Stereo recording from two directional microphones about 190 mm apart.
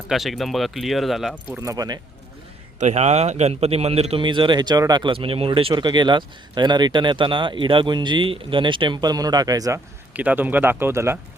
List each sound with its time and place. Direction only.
0.1 s speech: centre (ahead or behind)
1.6 s speech: 20° right (ahead or behind)
2.7 s speech: 35° right (ahead or behind); by 11.2 s 15° right (ahead or behind)